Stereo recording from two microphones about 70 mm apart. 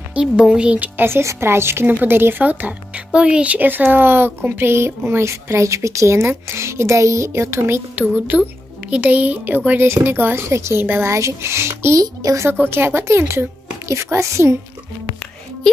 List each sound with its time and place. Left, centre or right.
0.1 s speech: centre
0.9 s speech: right
3.1 s speech: centre; by 7.8 s right
7.9 s speech: right
11.1 s speech: right
12.0 s a child's voice: right
12.4 s a woman's voice: right